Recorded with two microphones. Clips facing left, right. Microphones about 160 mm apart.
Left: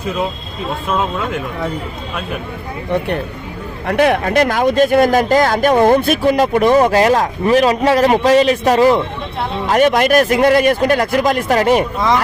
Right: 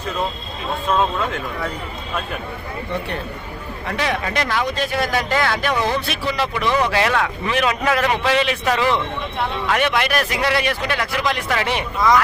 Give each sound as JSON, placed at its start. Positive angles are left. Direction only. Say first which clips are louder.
{"t": 3.8, "sound": "speech", "louder": "left 10 dB", "side_deg": 55}
{"t": 11.9, "sound": "speech", "louder": "left 1 dB", "side_deg": 25}